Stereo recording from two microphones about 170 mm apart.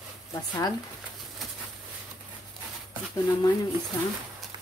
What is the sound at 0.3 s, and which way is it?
Speech, 20° left (ahead or behind).